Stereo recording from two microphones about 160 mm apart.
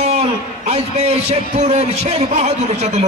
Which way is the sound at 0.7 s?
40° right (ahead or behind).